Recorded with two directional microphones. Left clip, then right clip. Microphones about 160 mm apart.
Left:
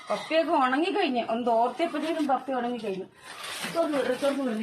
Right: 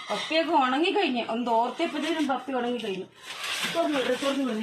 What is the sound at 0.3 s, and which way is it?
A woman's voice, centre (ahead or behind).